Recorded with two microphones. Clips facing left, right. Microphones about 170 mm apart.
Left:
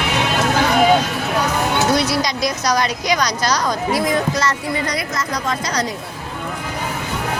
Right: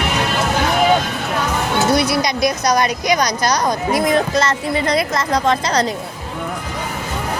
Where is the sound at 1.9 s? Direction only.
60° right (ahead or behind).